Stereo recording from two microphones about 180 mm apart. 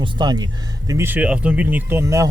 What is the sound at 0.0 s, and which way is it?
Speech, 25° right (ahead or behind).